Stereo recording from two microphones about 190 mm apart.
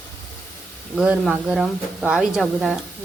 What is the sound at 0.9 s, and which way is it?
A woman's voice, 5° right (ahead or behind).